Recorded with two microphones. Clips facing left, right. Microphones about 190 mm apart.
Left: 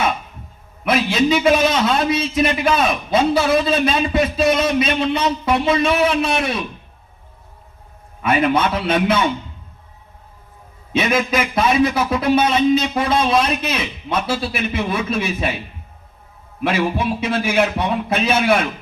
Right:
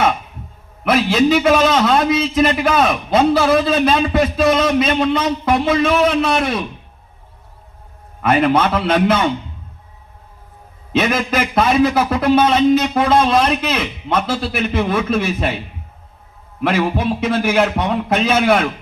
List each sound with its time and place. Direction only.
0.9 s a man's voice: 55° right (ahead or behind)
8.2 s a man's voice: 55° right (ahead or behind)
10.9 s a man's voice: 55° right (ahead or behind)
16.6 s a man's voice: 55° right (ahead or behind)